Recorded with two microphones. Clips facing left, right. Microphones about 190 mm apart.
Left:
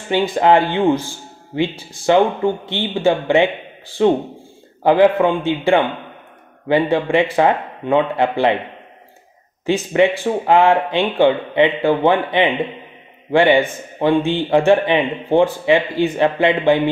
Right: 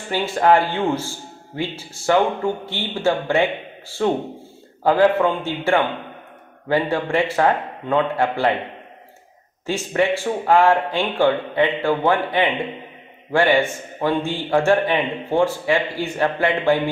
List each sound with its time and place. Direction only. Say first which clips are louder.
0.1 s speech: left 3 dB; 20° left (ahead or behind)
9.7 s a man's voice: left 5 dB; 20° left (ahead or behind)